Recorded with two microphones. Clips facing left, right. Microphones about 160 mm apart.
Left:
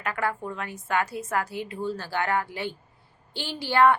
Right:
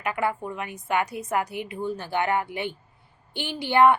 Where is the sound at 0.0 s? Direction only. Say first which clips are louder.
Right 2 dB; 15° right (ahead or behind).